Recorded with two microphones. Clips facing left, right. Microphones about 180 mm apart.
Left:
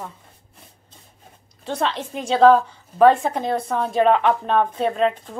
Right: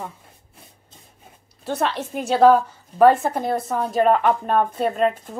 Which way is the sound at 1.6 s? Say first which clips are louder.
Right 1 dB; 5° right (ahead or behind).